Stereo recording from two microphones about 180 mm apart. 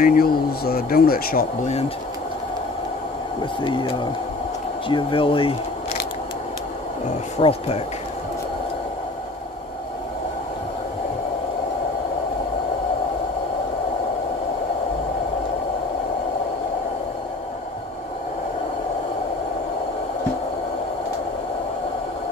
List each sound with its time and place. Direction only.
0.0 s speech: 55° left (ahead or behind)
3.6 s speech: 25° left (ahead or behind)
7.3 s speech: 35° left (ahead or behind)